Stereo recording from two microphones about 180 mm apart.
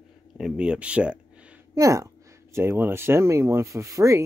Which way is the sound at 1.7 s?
20° right (ahead or behind).